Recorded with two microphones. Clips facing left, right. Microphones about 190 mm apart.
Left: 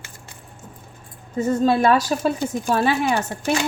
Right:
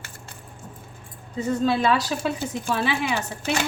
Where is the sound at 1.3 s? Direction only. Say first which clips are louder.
Left 4 dB; 45° left (ahead or behind).